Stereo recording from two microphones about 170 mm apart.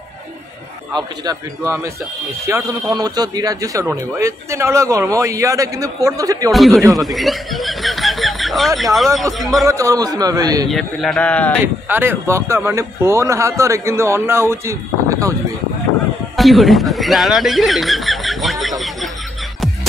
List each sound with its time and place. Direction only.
2.4 s speech: 20° right (ahead or behind)
6.5 s speech: centre (ahead or behind)
7.0 s chuckle: centre (ahead or behind)
8.9 s speech: centre (ahead or behind)
9.7 s speech: 20° right (ahead or behind)
10.7 s a man's voice: centre (ahead or behind)
11.6 s a man's voice: 15° right (ahead or behind)
16.3 s speech: centre (ahead or behind)